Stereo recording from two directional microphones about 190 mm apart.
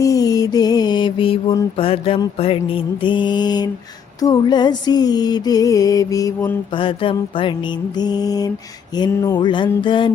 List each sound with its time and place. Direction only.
0.0 s mantra: 20° left (ahead or behind)